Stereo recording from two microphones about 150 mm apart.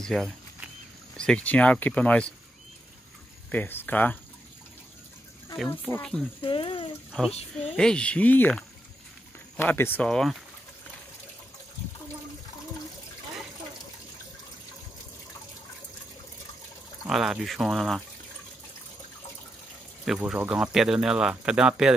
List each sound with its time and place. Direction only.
0.0 s speech: centre (ahead or behind)
3.5 s speech: 10° left (ahead or behind)
5.7 s speech: 15° left (ahead or behind)
6.4 s speech: 35° left (ahead or behind)
7.1 s speech: centre (ahead or behind)
10.0 s speech: centre (ahead or behind)
17.1 s speech: centre (ahead or behind)
20.2 s speech: 5° right (ahead or behind)